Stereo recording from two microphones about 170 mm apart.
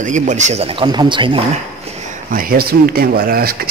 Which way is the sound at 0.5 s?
35° right (ahead or behind).